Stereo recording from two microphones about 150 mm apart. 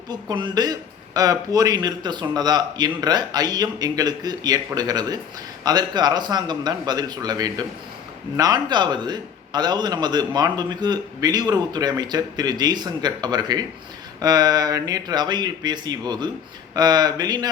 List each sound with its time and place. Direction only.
0.1 s a man's voice: 30° right (ahead or behind)